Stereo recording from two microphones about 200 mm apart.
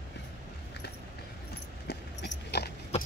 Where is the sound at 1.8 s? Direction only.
55° left (ahead or behind).